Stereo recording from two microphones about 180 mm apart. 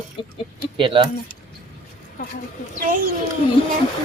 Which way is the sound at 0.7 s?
30° right (ahead or behind).